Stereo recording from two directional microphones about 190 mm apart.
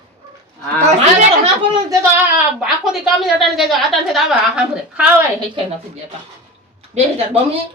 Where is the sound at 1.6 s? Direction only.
25° right (ahead or behind).